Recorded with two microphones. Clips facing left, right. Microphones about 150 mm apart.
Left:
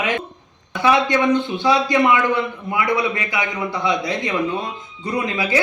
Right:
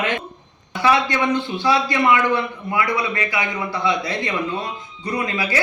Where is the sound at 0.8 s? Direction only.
20° left (ahead or behind).